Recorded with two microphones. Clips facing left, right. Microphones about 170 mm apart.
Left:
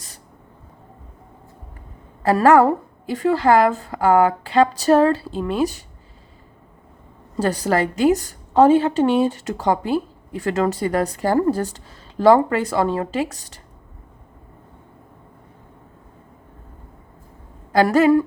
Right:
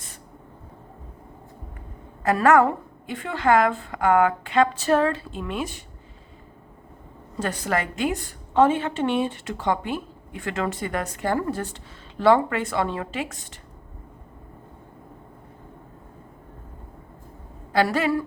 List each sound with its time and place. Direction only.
2.2 s a woman's voice: 35° left (ahead or behind)
7.3 s a woman's voice: 35° left (ahead or behind)
17.7 s a woman's voice: 45° left (ahead or behind)